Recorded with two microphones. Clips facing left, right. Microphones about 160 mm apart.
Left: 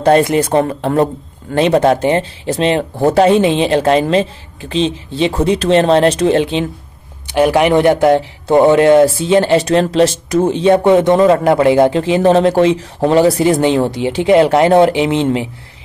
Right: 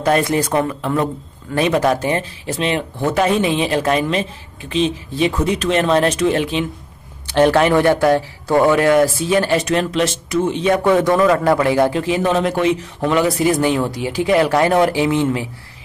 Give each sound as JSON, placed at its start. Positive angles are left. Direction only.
{"t": 0.0, "sound": "speech", "side_deg": 25}
{"t": 7.3, "sound": "speech", "side_deg": 10}